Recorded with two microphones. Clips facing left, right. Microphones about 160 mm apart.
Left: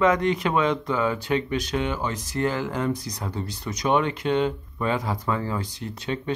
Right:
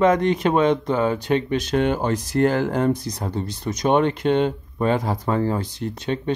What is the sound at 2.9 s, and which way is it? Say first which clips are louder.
Speech: right 5 dB; 25° right (ahead or behind).